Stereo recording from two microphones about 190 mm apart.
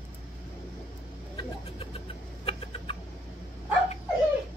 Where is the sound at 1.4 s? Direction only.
30° left (ahead or behind).